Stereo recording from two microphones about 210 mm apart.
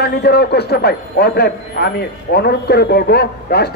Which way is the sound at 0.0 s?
50° left (ahead or behind).